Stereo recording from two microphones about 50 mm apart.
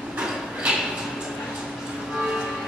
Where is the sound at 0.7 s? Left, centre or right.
Centre.